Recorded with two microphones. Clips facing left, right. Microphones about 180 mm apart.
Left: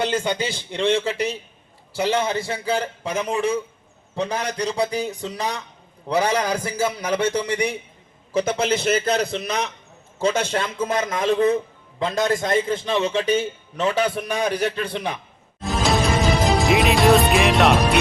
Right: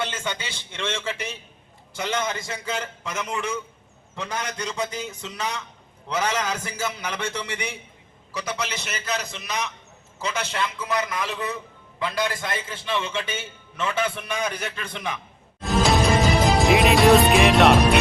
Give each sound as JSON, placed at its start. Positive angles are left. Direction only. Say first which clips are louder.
{"t": 0.0, "sound": "a man's voice", "louder": "left 7 dB", "side_deg": 35}
{"t": 8.3, "sound": "a man's voice", "louder": "left 10 dB", "side_deg": 50}
{"t": 8.5, "sound": "a man's voice", "louder": "left 11 dB", "side_deg": 30}
{"t": 10.5, "sound": "a man's voice", "louder": "left 4 dB", "side_deg": 50}
{"t": 15.6, "sound": "music", "louder": "right 1 dB", "side_deg": 0}